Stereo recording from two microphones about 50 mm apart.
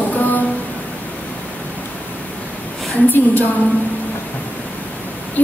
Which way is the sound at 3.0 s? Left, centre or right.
Left.